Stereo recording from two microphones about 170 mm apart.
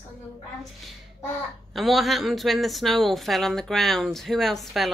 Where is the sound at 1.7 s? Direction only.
Centre (ahead or behind).